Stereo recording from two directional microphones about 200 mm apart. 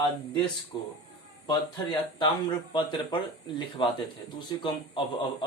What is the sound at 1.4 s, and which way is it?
Speech, 20° left (ahead or behind).